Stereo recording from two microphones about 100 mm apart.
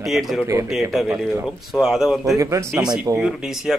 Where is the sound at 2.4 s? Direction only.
30° right (ahead or behind).